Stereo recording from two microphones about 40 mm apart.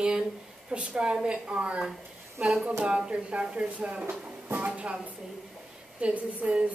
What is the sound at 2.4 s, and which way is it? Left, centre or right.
Speech, right.